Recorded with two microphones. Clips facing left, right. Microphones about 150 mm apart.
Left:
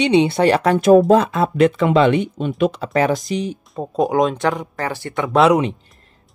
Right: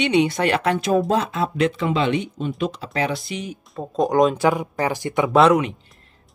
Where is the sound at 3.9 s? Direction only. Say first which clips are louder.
Even; centre (ahead or behind); by 5.2 s 15° right (ahead or behind).